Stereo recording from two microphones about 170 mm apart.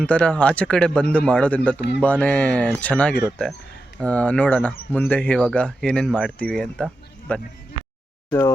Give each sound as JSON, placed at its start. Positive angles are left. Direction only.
{"t": 0.0, "sound": "speech", "side_deg": 5}
{"t": 8.3, "sound": "speech", "side_deg": 15}